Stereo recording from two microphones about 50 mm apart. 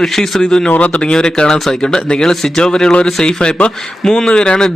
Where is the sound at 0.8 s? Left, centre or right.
Left.